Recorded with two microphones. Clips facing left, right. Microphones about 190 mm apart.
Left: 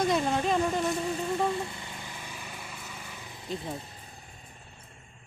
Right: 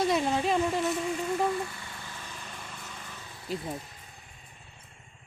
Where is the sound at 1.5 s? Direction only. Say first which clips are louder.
Even; 25° left (ahead or behind).